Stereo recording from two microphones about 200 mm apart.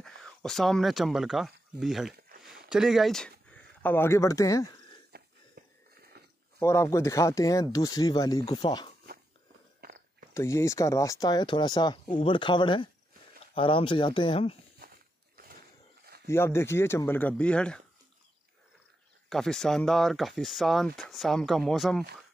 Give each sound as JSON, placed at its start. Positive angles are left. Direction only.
{"t": 0.0, "sound": "speech", "side_deg": 5}
{"t": 5.1, "sound": "wheeze", "side_deg": -50}
{"t": 6.2, "sound": "a sound", "side_deg": -50}
{"t": 6.6, "sound": "speech", "side_deg": 15}
{"t": 9.8, "sound": "chewing", "side_deg": -50}
{"t": 10.3, "sound": "speech", "side_deg": 15}
{"t": 15.4, "sound": "a sound", "side_deg": -45}
{"t": 16.3, "sound": "speech", "side_deg": 10}
{"t": 19.2, "sound": "speech", "side_deg": 0}